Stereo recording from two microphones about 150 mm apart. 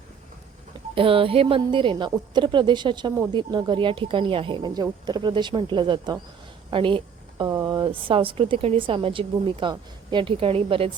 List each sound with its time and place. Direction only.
0.9 s speech: 35° right (ahead or behind)
6.7 s a sound: 35° right (ahead or behind)
7.5 s speech: 30° right (ahead or behind)